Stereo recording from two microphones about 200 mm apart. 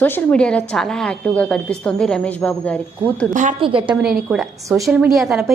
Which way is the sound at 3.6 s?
25° right (ahead or behind).